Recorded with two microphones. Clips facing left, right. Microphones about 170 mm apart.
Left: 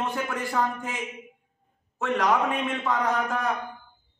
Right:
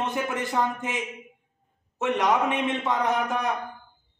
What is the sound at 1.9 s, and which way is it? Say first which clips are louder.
A man's voice: right 1 dB; 20° right (ahead or behind).